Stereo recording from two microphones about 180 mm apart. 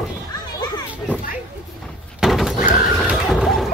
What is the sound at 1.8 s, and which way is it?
Neigh, centre (ahead or behind).